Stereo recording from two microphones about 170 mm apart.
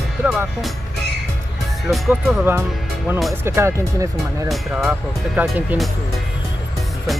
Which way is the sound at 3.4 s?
15° right (ahead or behind).